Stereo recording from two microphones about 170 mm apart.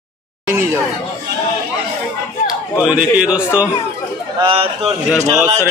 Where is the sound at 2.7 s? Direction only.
5° right (ahead or behind).